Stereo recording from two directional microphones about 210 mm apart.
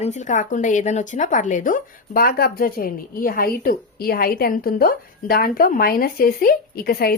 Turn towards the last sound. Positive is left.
turn(degrees=45)  # may be behind; listen again after turning